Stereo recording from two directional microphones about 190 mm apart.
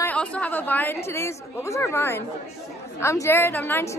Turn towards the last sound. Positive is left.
turn(degrees=10)  # may be behind; listen again after turning